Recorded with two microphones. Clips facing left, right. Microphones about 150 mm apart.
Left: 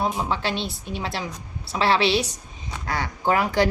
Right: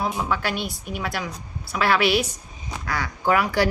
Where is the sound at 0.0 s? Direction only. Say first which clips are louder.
Even; 25° left (ahead or behind).